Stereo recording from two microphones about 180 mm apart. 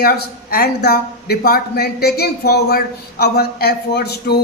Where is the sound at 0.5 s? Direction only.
60° left (ahead or behind).